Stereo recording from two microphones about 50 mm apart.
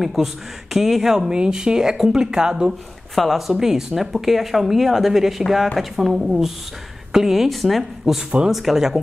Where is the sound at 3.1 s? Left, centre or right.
Centre.